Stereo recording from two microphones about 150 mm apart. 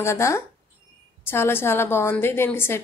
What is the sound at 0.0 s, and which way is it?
A woman's voice, 20° left (ahead or behind).